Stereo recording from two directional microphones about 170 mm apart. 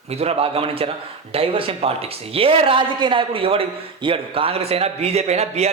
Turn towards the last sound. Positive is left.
turn(degrees=-40)  # may be behind; listen again after turning